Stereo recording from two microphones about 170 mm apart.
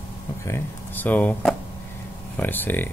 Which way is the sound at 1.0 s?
10° left (ahead or behind).